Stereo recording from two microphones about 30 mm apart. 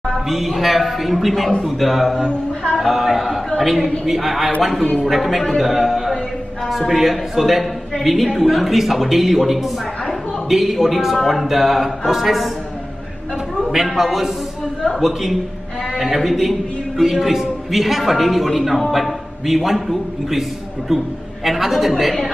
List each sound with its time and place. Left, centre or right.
0.3 s a woman's voice: centre
2.2 s speech: left
2.8 s a man's voice: centre
13.7 s a man's voice: centre